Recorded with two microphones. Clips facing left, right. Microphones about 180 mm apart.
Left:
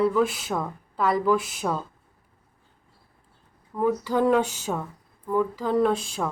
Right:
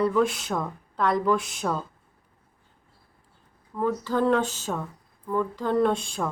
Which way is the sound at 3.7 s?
10° left (ahead or behind).